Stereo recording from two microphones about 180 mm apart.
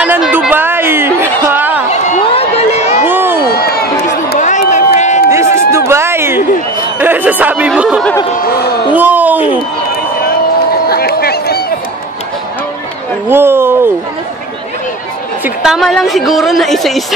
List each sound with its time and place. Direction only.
0.0 s a sound: 5° right (ahead or behind)
1.9 s run: 35° left (ahead or behind)
3.1 s crowd: 10° right (ahead or behind)
3.3 s crowd: 60° left (ahead or behind)
4.4 s crowd: 45° left (ahead or behind)
5.3 s a sound: 15° right (ahead or behind)
7.0 s speech: 10° right (ahead or behind)
10.9 s a sound: 60° left (ahead or behind)
13.3 s speech: 15° right (ahead or behind)
15.4 s a woman's voice: 5° right (ahead or behind)